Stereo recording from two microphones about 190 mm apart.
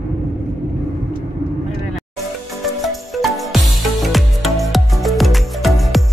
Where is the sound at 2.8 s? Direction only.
Centre (ahead or behind).